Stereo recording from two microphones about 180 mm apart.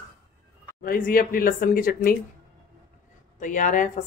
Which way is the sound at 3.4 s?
45° left (ahead or behind).